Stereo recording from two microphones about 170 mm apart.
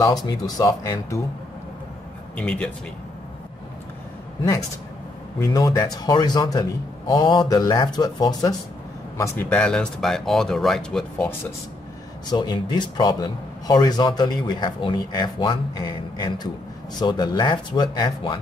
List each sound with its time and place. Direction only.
0.0 s a man's voice: 20° left (ahead or behind)
2.3 s speech: 5° left (ahead or behind)
5.4 s a man's voice: 20° left (ahead or behind)
9.2 s speech: 10° left (ahead or behind)
12.3 s a man's voice: 25° left (ahead or behind)